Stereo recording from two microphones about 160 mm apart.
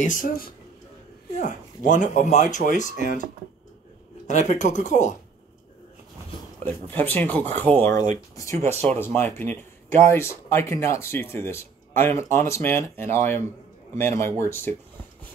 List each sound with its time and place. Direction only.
0.0 s speech: 55° left (ahead or behind)
4.3 s speech: 50° left (ahead or behind)
6.6 s speech: 10° left (ahead or behind)